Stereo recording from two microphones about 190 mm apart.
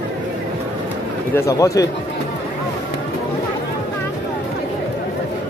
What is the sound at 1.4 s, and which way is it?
Speech, 15° left (ahead or behind).